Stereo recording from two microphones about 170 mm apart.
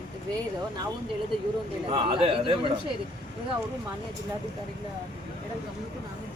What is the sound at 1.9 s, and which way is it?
Speech, 30° right (ahead or behind).